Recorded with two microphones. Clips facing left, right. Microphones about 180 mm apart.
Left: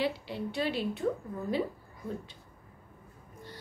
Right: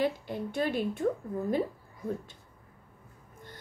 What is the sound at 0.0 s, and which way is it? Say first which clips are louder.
A woman's voice: right 2 dB; 45° right (ahead or behind).